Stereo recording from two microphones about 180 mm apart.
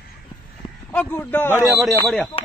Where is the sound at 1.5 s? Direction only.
5° right (ahead or behind).